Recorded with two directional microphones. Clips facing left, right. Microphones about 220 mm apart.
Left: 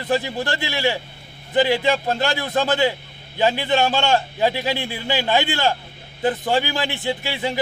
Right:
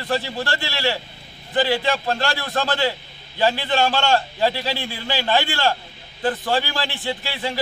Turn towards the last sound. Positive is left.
turn(degrees=15)  # may be behind; listen again after turning